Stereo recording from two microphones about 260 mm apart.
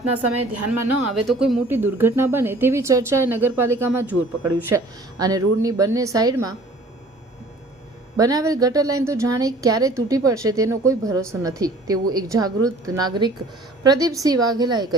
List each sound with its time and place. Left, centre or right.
0.3 s a woman's voice: right
1.4 s a woman's voice: centre
8.1 s a woman's voice: centre